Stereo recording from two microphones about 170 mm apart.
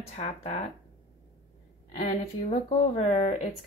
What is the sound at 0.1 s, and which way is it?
Speech, 45° left (ahead or behind).